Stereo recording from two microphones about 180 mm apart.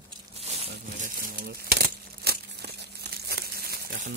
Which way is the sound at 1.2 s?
60° right (ahead or behind).